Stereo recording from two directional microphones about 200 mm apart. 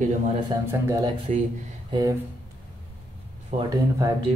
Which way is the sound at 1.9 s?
20° right (ahead or behind).